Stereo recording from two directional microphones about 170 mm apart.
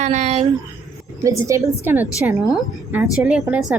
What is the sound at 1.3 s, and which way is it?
A woman's voice, 20° right (ahead or behind).